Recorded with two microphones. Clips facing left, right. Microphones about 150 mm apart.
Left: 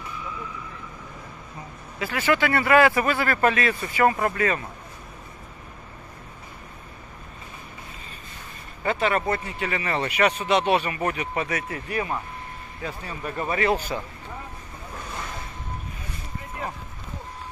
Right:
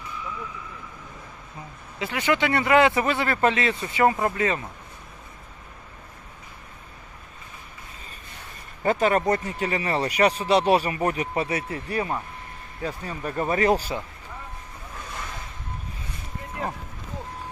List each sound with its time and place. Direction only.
2.0 s speech: 20° right (ahead or behind)
8.8 s speech: 40° right (ahead or behind)